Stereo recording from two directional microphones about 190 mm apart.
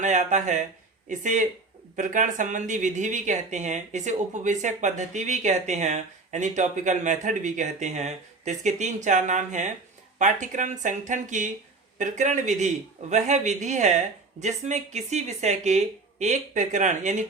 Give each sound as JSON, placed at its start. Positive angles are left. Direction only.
{"t": 0.0, "sound": "speech", "side_deg": -40}